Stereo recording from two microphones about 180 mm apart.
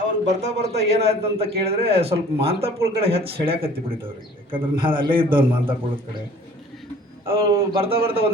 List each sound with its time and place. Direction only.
0.3 s a man's voice: 40° right (ahead or behind)
7.3 s a man's voice: 30° right (ahead or behind)